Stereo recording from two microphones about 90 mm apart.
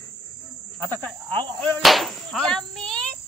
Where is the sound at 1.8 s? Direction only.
Centre (ahead or behind).